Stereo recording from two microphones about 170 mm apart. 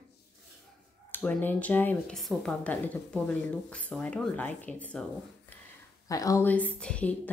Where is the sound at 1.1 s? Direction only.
10° left (ahead or behind).